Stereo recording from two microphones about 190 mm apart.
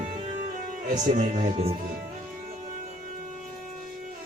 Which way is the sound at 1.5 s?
30° right (ahead or behind).